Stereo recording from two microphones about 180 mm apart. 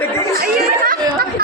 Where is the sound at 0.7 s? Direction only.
50° right (ahead or behind).